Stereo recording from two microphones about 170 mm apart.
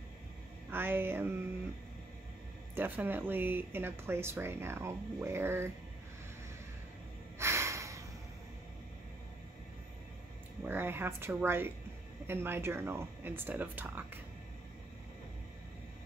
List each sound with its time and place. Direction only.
0.7 s speech: 15° right (ahead or behind)
2.7 s speech: 10° right (ahead or behind)
7.3 s snort: 15° right (ahead or behind)
10.6 s speech: 15° right (ahead or behind)